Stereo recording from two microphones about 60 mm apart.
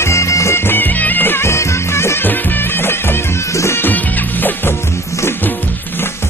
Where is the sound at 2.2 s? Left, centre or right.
Left.